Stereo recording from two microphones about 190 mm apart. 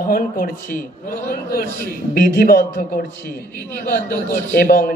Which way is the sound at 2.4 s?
45° left (ahead or behind).